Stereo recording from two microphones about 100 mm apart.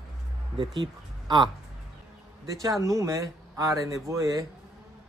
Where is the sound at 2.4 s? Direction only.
35° right (ahead or behind).